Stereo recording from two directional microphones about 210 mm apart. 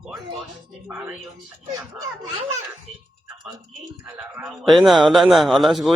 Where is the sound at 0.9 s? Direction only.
10° right (ahead or behind).